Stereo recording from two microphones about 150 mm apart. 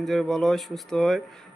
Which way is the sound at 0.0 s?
Centre (ahead or behind).